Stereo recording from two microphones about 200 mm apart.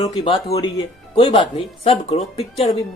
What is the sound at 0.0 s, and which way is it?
Speech, 30° left (ahead or behind).